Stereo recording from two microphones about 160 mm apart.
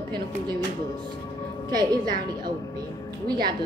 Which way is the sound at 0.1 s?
25° right (ahead or behind).